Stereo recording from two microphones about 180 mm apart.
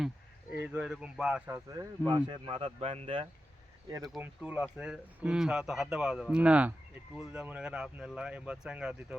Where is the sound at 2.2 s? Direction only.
30° right (ahead or behind).